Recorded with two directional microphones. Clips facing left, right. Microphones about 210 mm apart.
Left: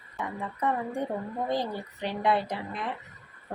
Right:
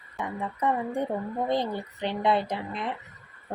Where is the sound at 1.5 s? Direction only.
20° right (ahead or behind).